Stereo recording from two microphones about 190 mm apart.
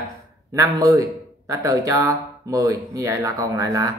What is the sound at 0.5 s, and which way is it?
A man's voice, 20° right (ahead or behind).